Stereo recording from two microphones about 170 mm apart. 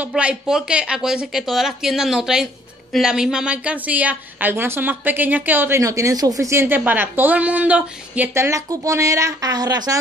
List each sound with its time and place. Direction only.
0.0 s a woman's voice: 5° right (ahead or behind); by 9.9 s 25° right (ahead or behind)